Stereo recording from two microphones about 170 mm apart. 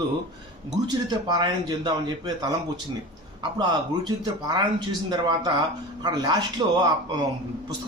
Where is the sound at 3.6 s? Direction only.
25° right (ahead or behind).